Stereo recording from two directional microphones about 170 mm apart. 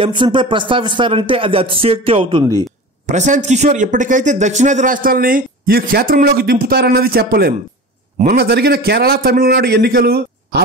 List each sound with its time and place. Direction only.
0.0 s speech: 30° right (ahead or behind)
3.1 s a man's voice: 45° right (ahead or behind); by 10.6 s 65° right (ahead or behind)